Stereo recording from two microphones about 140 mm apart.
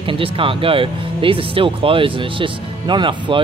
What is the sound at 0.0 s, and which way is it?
Speech, 40° right (ahead or behind).